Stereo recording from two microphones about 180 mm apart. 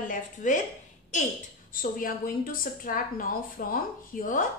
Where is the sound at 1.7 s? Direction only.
50° left (ahead or behind).